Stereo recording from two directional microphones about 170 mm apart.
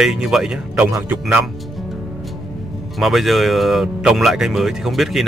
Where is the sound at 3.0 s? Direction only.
Centre (ahead or behind).